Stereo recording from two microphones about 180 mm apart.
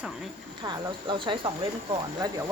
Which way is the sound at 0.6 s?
25° right (ahead or behind).